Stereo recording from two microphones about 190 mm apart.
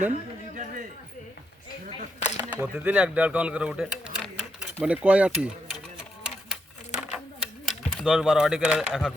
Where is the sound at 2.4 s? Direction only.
10° right (ahead or behind).